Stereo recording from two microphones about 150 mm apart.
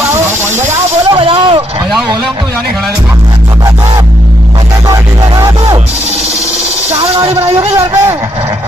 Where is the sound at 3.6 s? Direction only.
25° right (ahead or behind).